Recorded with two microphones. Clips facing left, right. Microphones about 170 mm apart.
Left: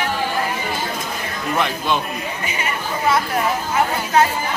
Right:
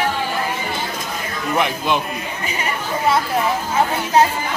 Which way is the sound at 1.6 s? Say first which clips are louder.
Right 1 dB; 15° right (ahead or behind).